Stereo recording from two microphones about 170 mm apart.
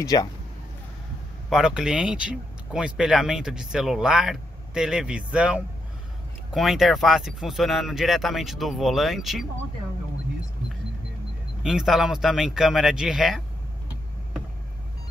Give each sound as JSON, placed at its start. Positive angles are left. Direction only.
{"t": 0.0, "sound": "speech", "side_deg": 20}
{"t": 1.5, "sound": "speech", "side_deg": -5}
{"t": 11.6, "sound": "speech", "side_deg": -5}